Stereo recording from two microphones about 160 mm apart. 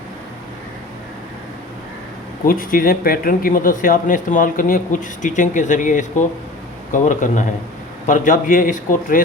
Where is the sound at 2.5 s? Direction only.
60° left (ahead or behind).